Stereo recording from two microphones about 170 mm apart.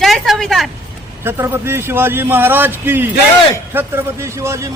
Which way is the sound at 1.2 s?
15° right (ahead or behind).